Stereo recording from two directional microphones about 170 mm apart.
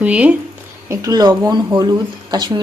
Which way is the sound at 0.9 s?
20° right (ahead or behind).